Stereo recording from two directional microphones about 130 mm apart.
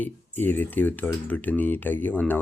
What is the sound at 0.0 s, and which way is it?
Speech, 15° left (ahead or behind).